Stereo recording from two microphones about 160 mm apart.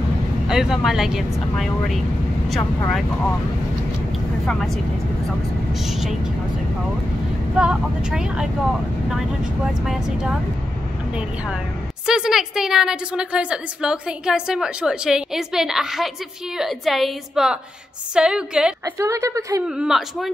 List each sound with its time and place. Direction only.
0.5 s a woman's voice: 5° right (ahead or behind)
4.5 s a woman's voice: centre (ahead or behind)
7.5 s a woman's voice: 5° right (ahead or behind)
9.8 s a woman's voice: 5° right (ahead or behind)
12.1 s a woman's voice: 5° right (ahead or behind)
18.9 s a woman's voice: 20° right (ahead or behind)
19.7 s a woman's voice: 5° right (ahead or behind)